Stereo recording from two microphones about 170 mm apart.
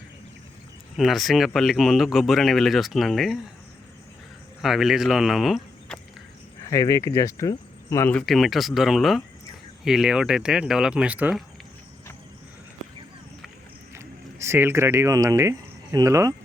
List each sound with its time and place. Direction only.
0.9 s speech: centre (ahead or behind)
4.6 s speech: centre (ahead or behind)
6.7 s speech: 20° left (ahead or behind)
8.3 s speech: centre (ahead or behind)
13.9 s speech: 15° right (ahead or behind)